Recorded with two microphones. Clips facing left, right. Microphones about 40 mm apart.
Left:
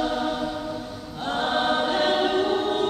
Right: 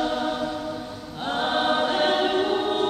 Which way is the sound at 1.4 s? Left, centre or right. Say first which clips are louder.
Even; centre.